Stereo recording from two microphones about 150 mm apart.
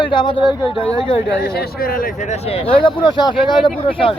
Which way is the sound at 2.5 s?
35° left (ahead or behind).